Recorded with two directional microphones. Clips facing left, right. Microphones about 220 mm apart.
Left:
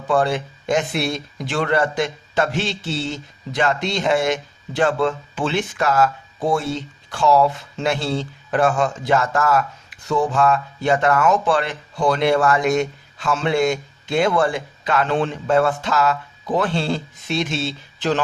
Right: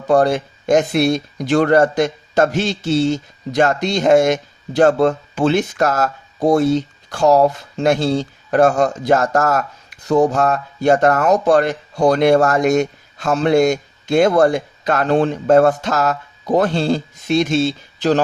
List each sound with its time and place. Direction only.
0.1 s speech: 40° right (ahead or behind)